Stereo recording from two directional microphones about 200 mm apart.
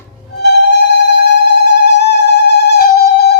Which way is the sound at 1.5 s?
60° left (ahead or behind).